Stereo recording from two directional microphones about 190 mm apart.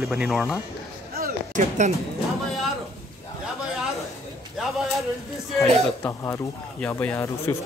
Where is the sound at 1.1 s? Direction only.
45° right (ahead or behind).